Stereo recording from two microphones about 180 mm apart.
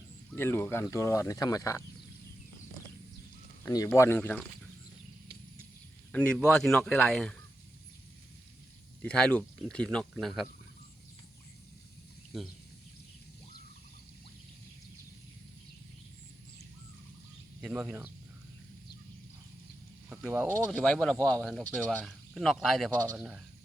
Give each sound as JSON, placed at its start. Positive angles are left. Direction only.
{"t": 0.3, "sound": "speech", "side_deg": 10}
{"t": 3.6, "sound": "speech", "side_deg": 15}
{"t": 6.1, "sound": "speech", "side_deg": 5}
{"t": 9.0, "sound": "speech", "side_deg": 5}
{"t": 17.6, "sound": "speech", "side_deg": -5}
{"t": 20.1, "sound": "snake", "side_deg": -10}
{"t": 20.7, "sound": "speech", "side_deg": 5}